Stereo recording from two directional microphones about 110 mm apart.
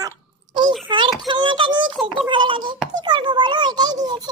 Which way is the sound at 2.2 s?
45° right (ahead or behind).